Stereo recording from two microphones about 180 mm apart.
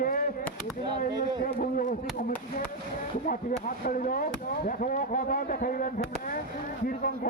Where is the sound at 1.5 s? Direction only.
50° left (ahead or behind).